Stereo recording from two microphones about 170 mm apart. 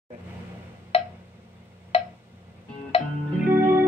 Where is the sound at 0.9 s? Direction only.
35° left (ahead or behind).